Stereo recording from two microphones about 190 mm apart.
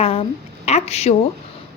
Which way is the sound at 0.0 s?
30° left (ahead or behind).